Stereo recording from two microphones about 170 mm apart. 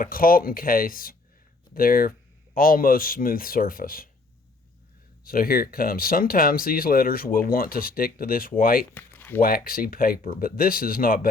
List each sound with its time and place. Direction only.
0.0 s speech: 55° left (ahead or behind)
5.2 s speech: 60° left (ahead or behind)
8.9 s a sound: 10° left (ahead or behind)
9.4 s speech: 60° left (ahead or behind)